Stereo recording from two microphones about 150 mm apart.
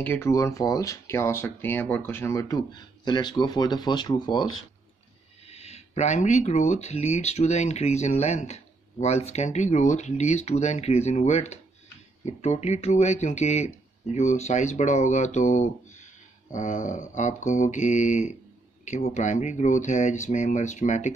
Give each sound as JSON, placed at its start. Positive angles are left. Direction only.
{"t": 0.0, "sound": "speech", "side_deg": 15}
{"t": 5.5, "sound": "speech", "side_deg": 45}